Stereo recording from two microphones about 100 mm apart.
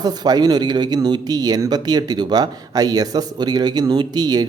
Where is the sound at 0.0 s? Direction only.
40° right (ahead or behind).